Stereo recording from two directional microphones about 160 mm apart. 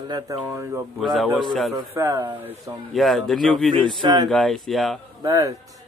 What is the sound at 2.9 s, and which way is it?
Speech, centre (ahead or behind).